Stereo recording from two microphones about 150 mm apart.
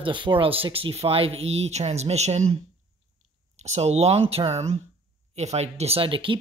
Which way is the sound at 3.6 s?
50° right (ahead or behind).